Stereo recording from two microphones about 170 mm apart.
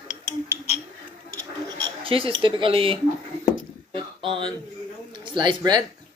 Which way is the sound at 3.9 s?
30° right (ahead or behind).